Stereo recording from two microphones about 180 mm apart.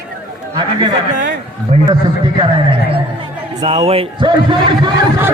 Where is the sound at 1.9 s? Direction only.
30° right (ahead or behind).